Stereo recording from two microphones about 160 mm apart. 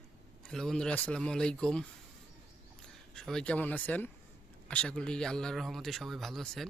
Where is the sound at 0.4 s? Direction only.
Centre (ahead or behind).